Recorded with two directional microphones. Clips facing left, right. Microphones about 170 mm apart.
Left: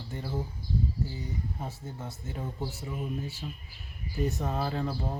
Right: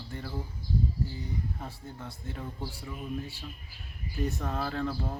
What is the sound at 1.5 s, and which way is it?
Speech, 20° left (ahead or behind).